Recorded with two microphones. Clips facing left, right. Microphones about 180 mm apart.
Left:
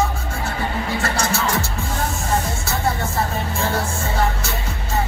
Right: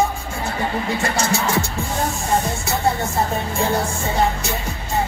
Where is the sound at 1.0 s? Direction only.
15° right (ahead or behind).